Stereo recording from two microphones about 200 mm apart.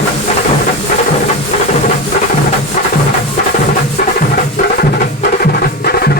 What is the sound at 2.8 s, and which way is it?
Music, 40° left (ahead or behind).